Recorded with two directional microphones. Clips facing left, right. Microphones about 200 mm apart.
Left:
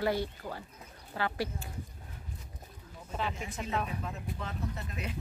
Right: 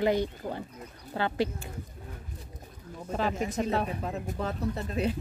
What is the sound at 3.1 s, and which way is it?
Speech, 40° right (ahead or behind).